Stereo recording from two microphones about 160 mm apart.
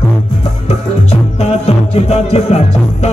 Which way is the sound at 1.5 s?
40° left (ahead or behind).